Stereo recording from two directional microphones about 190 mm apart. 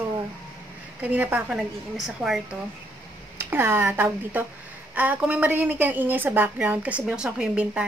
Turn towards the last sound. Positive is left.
turn(degrees=-5)  # may be behind; listen again after turning